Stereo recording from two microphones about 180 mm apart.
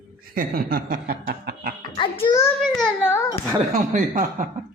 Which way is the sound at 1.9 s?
30° left (ahead or behind).